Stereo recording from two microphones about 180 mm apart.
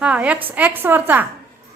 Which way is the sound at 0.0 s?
5° right (ahead or behind).